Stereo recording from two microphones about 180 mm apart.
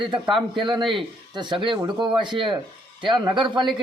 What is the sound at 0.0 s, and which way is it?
Speech, 25° right (ahead or behind).